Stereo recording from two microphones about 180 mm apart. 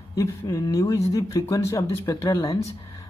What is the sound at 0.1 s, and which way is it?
Speech, 15° left (ahead or behind).